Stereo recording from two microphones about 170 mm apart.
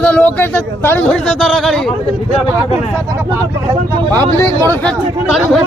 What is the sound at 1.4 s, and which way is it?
Speech, centre (ahead or behind).